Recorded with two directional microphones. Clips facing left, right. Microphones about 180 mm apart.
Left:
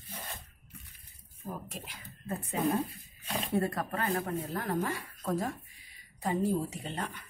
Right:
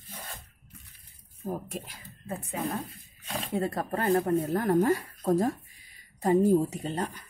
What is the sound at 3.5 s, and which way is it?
A woman's voice, 20° right (ahead or behind).